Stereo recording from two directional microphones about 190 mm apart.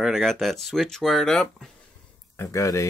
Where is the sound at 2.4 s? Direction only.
15° left (ahead or behind).